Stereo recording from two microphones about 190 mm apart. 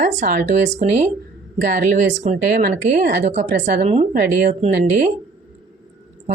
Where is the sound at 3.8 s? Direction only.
35° right (ahead or behind).